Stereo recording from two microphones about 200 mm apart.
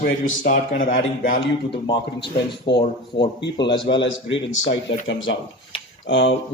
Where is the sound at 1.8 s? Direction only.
25° left (ahead or behind).